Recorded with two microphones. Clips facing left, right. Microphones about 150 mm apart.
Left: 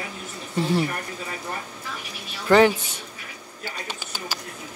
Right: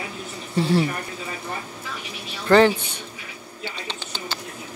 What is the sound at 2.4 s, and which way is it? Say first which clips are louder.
Speech: right 1 dB; 5° left (ahead or behind).